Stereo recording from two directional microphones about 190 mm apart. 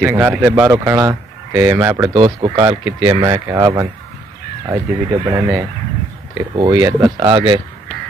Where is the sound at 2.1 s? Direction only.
30° right (ahead or behind).